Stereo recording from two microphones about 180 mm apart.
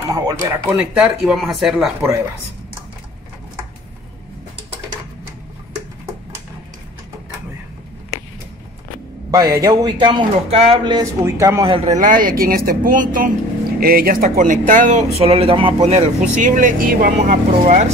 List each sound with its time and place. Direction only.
0.1 s speech: 20° right (ahead or behind)
0.7 s speech: 5° right (ahead or behind)
9.3 s a man's voice: 20° right (ahead or behind)
11.7 s speech: 40° right (ahead or behind)
15.1 s speech: 35° right (ahead or behind)
16.3 s speech: 45° right (ahead or behind)